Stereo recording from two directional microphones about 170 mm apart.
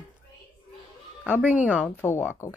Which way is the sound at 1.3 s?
10° right (ahead or behind).